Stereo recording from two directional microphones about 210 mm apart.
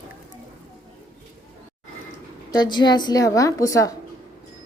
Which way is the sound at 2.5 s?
20° left (ahead or behind).